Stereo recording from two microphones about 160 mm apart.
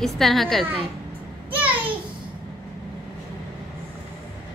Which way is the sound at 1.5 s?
10° right (ahead or behind).